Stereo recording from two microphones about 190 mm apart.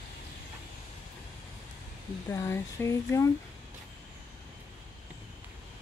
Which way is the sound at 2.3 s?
15° left (ahead or behind).